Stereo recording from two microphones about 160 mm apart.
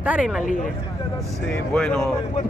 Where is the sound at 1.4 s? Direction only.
5° left (ahead or behind).